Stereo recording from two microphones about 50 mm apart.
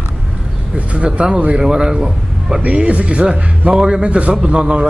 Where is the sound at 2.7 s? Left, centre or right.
Right.